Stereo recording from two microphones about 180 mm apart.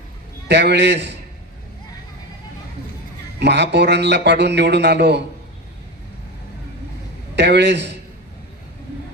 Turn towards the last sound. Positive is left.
turn(degrees=-70)  # may be behind; listen again after turning